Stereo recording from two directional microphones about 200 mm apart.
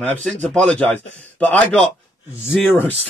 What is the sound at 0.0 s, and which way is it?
Speech, 5° left (ahead or behind).